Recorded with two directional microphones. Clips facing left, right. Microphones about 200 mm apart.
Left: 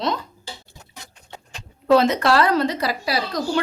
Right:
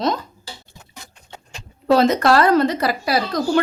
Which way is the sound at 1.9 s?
40° right (ahead or behind).